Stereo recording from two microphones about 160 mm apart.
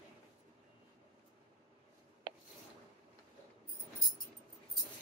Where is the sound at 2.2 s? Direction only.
30° right (ahead or behind).